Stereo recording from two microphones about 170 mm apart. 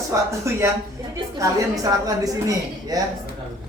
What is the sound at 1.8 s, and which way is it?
A woman's voice, 20° right (ahead or behind).